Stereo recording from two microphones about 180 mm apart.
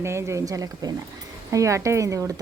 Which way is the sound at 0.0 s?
15° right (ahead or behind).